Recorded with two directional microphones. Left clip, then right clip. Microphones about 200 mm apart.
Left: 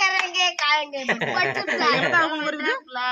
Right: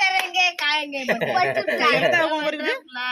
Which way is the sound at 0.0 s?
15° left (ahead or behind).